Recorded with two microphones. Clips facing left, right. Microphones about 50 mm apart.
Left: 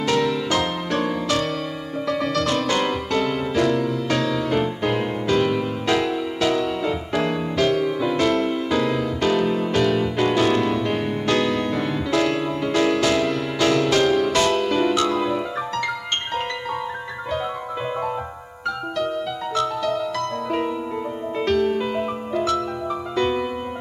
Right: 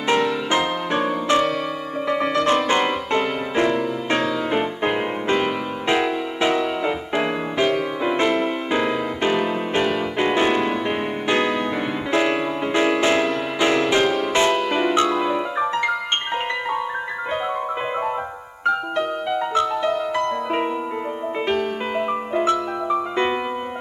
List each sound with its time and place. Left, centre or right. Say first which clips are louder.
0.0 s music: right 1 dB; right
19.5 s music: even; right